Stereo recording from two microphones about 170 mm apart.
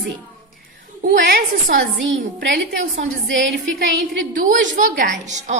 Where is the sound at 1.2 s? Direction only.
55° right (ahead or behind).